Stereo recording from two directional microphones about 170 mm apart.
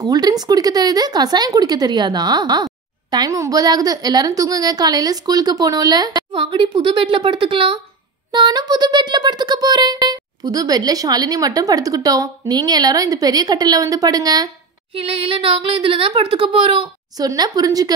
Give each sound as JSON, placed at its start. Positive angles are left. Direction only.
{"t": 0.0, "sound": "speech", "side_deg": -20}
{"t": 15.0, "sound": "speech", "side_deg": -30}